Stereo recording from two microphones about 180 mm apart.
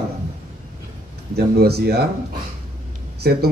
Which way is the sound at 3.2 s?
60° right (ahead or behind).